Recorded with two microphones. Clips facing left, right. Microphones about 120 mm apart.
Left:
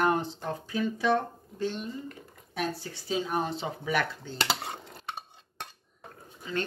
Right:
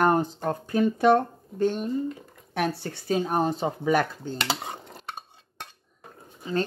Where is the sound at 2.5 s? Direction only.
65° right (ahead or behind); by 4.4 s 40° right (ahead or behind).